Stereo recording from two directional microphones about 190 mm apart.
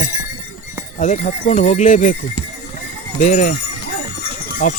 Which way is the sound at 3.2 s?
40° left (ahead or behind).